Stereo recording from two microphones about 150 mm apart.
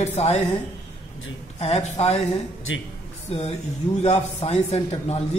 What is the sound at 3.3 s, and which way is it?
Mantra, 45° left (ahead or behind).